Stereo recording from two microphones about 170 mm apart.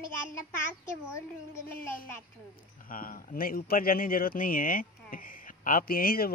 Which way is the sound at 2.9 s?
55° left (ahead or behind).